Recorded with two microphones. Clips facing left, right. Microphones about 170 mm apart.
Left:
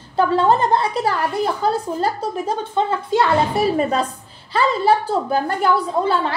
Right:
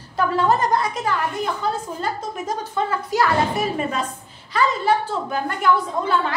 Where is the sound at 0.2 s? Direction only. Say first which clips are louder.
Left 3 dB; 30° left (ahead or behind).